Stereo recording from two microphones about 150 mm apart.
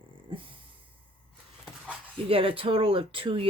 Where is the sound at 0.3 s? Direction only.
35° right (ahead or behind).